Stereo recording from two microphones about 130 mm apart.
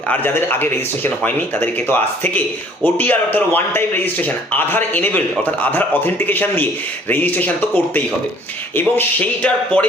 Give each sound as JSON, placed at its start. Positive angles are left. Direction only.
{"t": 0.1, "sound": "speech", "side_deg": 15}